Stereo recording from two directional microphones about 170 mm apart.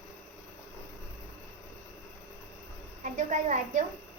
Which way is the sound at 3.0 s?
45° right (ahead or behind).